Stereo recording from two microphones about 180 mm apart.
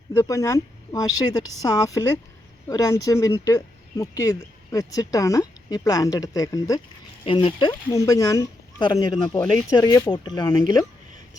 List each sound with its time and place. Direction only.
0.1 s speech: 15° left (ahead or behind)